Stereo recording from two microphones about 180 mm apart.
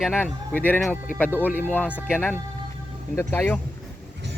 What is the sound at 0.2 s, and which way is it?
Speech, 10° left (ahead or behind).